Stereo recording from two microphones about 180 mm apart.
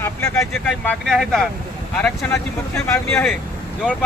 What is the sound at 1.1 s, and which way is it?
Speech, centre (ahead or behind).